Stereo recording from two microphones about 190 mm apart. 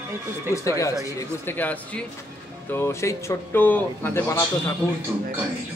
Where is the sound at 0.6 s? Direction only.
15° left (ahead or behind).